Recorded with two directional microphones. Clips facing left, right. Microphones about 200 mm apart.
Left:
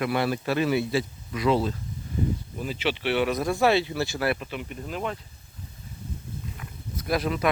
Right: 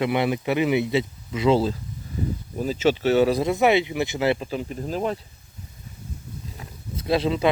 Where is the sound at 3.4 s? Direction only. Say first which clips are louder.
Right 3 dB; 20° right (ahead or behind).